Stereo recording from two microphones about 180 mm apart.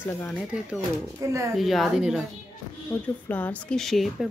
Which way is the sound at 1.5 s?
Centre (ahead or behind).